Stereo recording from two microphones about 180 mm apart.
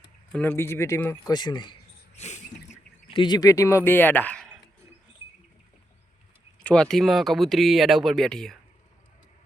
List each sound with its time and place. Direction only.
0.3 s speech: 10° left (ahead or behind)
2.1 s bird: 40° left (ahead or behind)
3.2 s speech: 25° left (ahead or behind); by 4.5 s 5° left (ahead or behind)
6.6 s speech: 5° left (ahead or behind)